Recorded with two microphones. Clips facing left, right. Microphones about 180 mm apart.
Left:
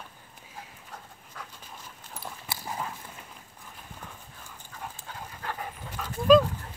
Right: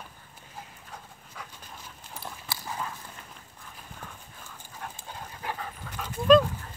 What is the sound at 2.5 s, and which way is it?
Clip-clop, 20° left (ahead or behind).